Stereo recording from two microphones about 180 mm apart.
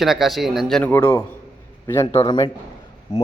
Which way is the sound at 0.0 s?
Centre (ahead or behind).